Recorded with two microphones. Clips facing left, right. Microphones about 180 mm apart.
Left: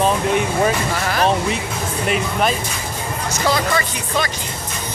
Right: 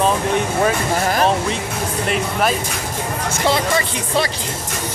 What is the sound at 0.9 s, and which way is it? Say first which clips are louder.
Speech: right 2 dB; 40° right (ahead or behind).